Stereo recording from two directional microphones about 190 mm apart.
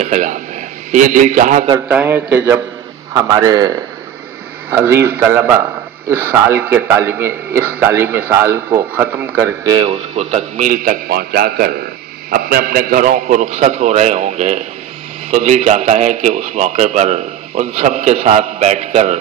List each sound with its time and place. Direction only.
0.0 s a man's voice: 40° right (ahead or behind)
1.9 s a man's voice: 10° right (ahead or behind)
9.7 s a man's voice: 25° right (ahead or behind)